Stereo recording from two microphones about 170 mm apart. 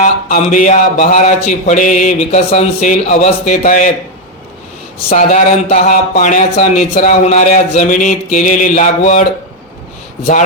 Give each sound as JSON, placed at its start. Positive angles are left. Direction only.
{"t": 0.0, "sound": "speech", "side_deg": 50}
{"t": 5.0, "sound": "speech", "side_deg": 40}